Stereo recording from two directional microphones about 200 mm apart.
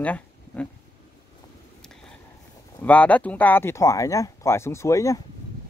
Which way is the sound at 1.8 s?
5° left (ahead or behind).